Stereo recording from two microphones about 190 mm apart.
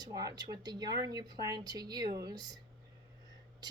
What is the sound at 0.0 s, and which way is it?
Speech, 20° right (ahead or behind).